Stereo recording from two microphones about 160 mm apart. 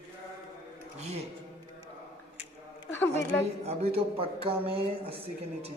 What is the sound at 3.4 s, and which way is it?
Speech, 40° right (ahead or behind).